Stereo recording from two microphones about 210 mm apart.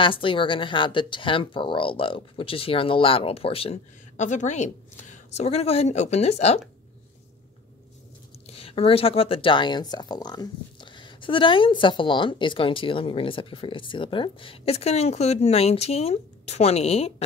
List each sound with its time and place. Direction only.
0.0 s speech: 25° left (ahead or behind)
8.5 s speech: 25° left (ahead or behind)